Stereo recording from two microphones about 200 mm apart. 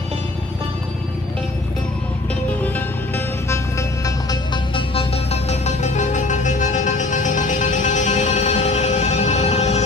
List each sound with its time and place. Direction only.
3.4 s music: 15° left (ahead or behind); by 9.8 s 35° left (ahead or behind)